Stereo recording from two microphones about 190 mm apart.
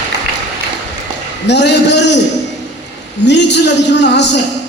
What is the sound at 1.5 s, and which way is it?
Speech, 65° left (ahead or behind).